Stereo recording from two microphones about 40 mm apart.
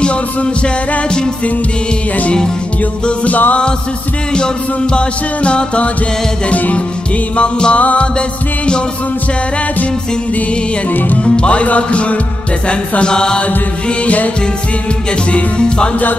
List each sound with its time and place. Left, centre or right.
0.0 s music: left
3.1 s speech: left
4.9 s music: left
6.5 s speech: left
7.3 s music: left
7.8 s speech: left
10.9 s music: left
11.2 s speech: left
12.6 s music: left
13.8 s speech: left
15.3 s music: left